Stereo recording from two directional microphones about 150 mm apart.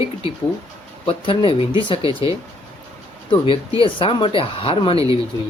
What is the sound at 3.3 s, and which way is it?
Speech, 35° left (ahead or behind).